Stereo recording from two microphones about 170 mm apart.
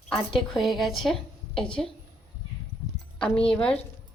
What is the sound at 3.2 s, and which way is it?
Speech, 5° left (ahead or behind).